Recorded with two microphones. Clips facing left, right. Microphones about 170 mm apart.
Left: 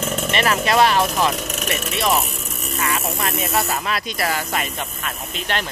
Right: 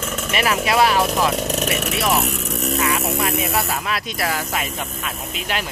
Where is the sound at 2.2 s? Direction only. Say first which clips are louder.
Right 7 dB; 70° right (ahead or behind).